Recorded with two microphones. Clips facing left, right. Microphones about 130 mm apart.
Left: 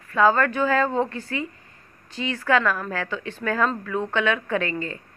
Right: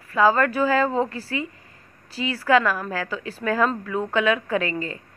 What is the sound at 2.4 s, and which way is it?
A woman's voice, 10° right (ahead or behind).